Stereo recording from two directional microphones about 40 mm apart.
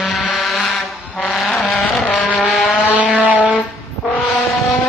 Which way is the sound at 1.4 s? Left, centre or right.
Centre.